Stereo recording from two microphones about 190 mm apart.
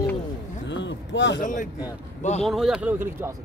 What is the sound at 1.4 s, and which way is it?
Speech, 40° left (ahead or behind).